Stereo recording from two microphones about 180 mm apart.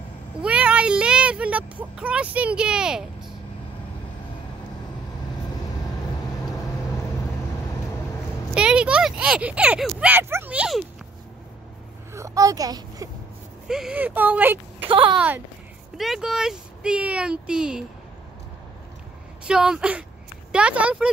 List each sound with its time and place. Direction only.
0.4 s speech: 5° right (ahead or behind)
8.5 s speech: 5° right (ahead or behind)
12.1 s a woman's voice: 20° right (ahead or behind)
13.7 s speech: 5° right (ahead or behind)
14.9 s speech: 30° right (ahead or behind)
15.1 s speech: 10° right (ahead or behind)
19.4 s speech: 5° right (ahead or behind)